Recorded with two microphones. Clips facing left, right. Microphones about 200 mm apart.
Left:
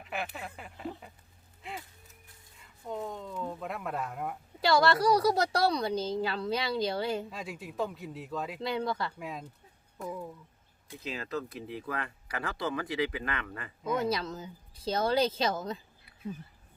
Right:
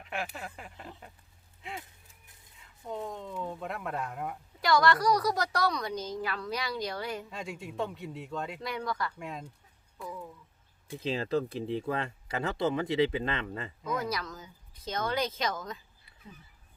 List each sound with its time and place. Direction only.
0.0 s speech: centre (ahead or behind)
4.6 s a woman's voice: 30° left (ahead or behind)
7.3 s speech: centre (ahead or behind)
8.6 s a woman's voice: 25° left (ahead or behind)
9.1 s speech: centre (ahead or behind)
10.1 s a woman's voice: 20° left (ahead or behind)
10.8 s speech: 30° right (ahead or behind)
14.0 s a woman's voice: 25° left (ahead or behind)